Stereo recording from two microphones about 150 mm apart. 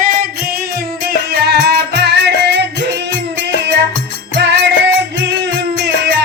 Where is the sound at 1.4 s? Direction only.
90° right.